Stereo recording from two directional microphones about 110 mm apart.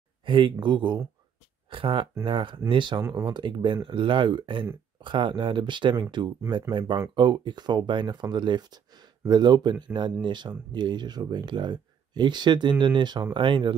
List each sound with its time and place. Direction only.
0.2 s speech: 50° right (ahead or behind)
3.0 s speech: 25° right (ahead or behind)
3.3 s speech: 45° right (ahead or behind)